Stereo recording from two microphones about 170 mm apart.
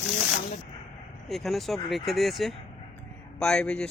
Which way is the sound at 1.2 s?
Centre (ahead or behind).